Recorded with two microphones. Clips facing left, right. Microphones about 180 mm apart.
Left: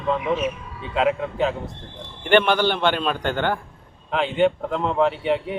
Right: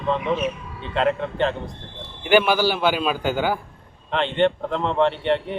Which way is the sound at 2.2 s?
5° right (ahead or behind).